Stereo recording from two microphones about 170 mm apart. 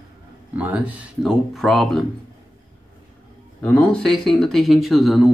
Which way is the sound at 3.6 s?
5° left (ahead or behind).